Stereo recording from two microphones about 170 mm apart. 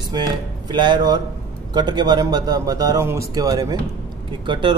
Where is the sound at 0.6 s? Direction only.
25° right (ahead or behind).